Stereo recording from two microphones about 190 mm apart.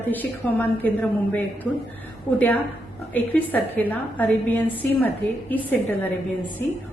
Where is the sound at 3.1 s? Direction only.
10° left (ahead or behind).